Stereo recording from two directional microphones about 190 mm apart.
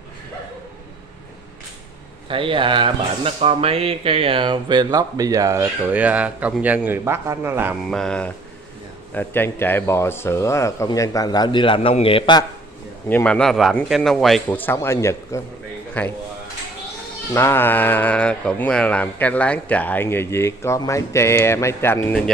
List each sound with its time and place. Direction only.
2.2 s speech: 25° right (ahead or behind); by 7.7 s 10° right (ahead or behind)
7.9 s a man's voice: 5° left (ahead or behind); by 12.4 s 25° left (ahead or behind)
13.1 s a man's voice: 5° left (ahead or behind)
17.3 s speech: 15° left (ahead or behind)